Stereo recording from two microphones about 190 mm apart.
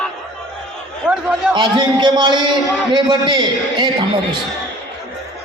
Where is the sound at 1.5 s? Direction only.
25° right (ahead or behind).